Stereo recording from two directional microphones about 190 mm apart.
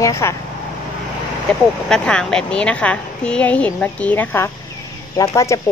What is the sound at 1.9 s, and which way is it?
A woman's voice, 5° left (ahead or behind).